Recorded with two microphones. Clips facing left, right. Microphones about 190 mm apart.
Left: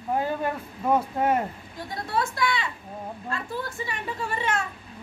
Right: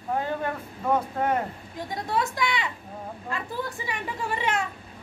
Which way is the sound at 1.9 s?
15° right (ahead or behind).